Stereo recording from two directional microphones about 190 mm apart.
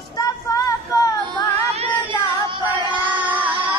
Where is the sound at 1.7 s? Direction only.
30° right (ahead or behind).